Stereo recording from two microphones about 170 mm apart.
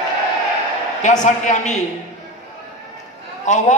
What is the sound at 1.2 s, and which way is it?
Speech, 45° left (ahead or behind).